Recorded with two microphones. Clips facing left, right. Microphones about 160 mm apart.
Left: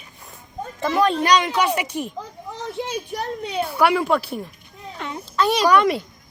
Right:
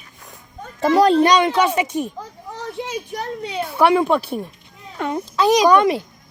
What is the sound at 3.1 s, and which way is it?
Speech, 5° left (ahead or behind).